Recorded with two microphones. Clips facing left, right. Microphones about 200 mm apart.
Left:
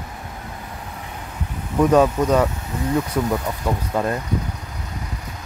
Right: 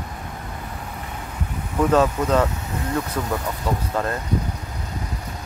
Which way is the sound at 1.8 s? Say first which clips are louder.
Left 3 dB; 10° left (ahead or behind).